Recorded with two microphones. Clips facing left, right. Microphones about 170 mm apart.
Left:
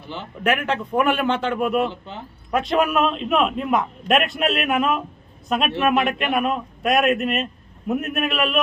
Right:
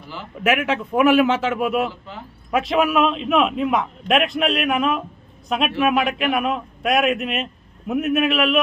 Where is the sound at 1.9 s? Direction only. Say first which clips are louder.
Left 1 dB; 25° left (ahead or behind).